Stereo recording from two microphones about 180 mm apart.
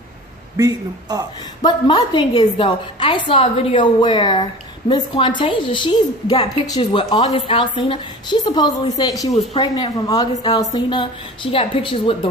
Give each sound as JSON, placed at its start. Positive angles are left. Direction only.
{"t": 0.6, "sound": "a man's voice", "side_deg": -20}
{"t": 1.6, "sound": "a woman's voice", "side_deg": 25}